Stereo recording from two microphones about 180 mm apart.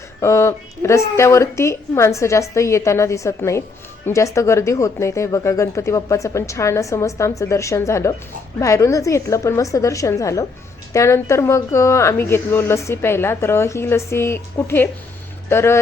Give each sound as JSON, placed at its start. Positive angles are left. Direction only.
{"t": 0.2, "sound": "speech", "side_deg": 15}